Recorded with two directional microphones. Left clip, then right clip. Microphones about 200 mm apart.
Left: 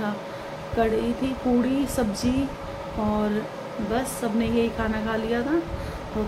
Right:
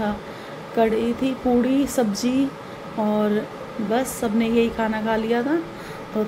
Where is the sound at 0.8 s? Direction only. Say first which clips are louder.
Right 4 dB; 20° right (ahead or behind).